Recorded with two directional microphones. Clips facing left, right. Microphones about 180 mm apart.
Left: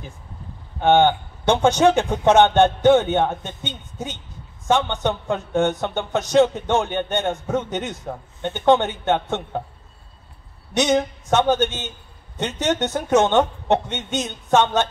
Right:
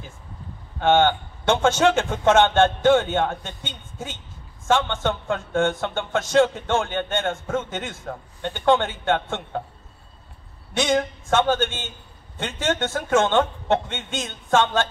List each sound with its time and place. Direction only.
0.7 s a man's voice: 15° left (ahead or behind)
10.7 s speech: 20° left (ahead or behind)